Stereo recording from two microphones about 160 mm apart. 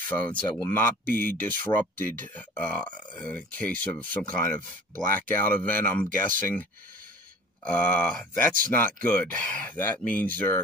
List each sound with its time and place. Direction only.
0.2 s speech: 10° left (ahead or behind)
6.0 s speech: 55° right (ahead or behind)
7.6 s speech: 10° left (ahead or behind)